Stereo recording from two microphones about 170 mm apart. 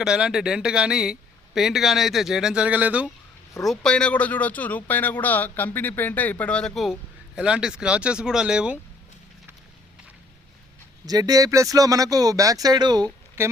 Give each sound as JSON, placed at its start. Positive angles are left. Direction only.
{"t": 0.0, "sound": "a man's voice", "side_deg": -5}
{"t": 3.7, "sound": "a man's voice", "side_deg": 5}
{"t": 11.0, "sound": "speech", "side_deg": -20}
{"t": 13.4, "sound": "speech", "side_deg": -15}